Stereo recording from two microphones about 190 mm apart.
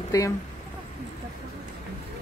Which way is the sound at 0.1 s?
20° left (ahead or behind).